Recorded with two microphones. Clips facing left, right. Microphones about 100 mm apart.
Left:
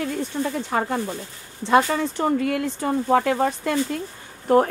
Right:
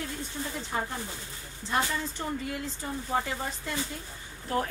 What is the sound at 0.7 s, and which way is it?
Speech, 75° left (ahead or behind).